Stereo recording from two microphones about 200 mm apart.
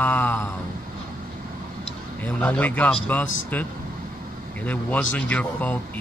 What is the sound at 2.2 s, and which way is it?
Speech, 10° left (ahead or behind).